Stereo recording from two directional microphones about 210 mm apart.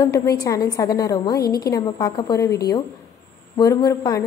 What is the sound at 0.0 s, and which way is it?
A woman's voice, 15° left (ahead or behind).